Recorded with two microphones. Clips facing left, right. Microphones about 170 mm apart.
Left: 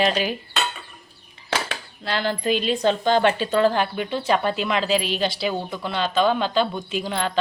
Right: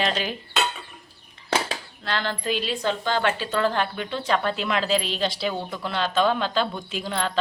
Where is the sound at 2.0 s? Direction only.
10° left (ahead or behind).